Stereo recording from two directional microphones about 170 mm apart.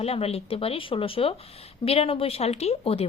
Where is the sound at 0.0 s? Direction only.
35° left (ahead or behind).